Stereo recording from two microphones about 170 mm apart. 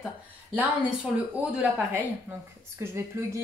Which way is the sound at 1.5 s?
10° right (ahead or behind).